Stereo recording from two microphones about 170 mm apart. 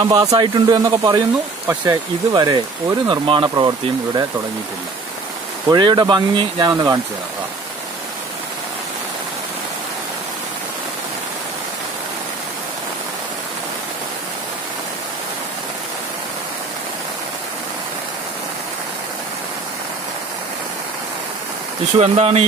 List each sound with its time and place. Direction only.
0.0 s speech: 20° right (ahead or behind)
5.7 s speech: 25° right (ahead or behind)
21.9 s speech: 35° right (ahead or behind)